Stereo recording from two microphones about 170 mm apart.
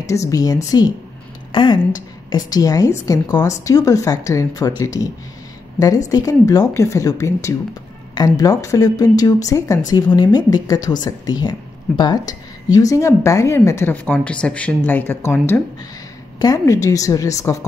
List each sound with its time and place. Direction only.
0.0 s a woman's voice: 20° left (ahead or behind)